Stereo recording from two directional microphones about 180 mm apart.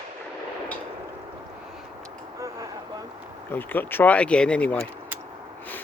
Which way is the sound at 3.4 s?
10° left (ahead or behind).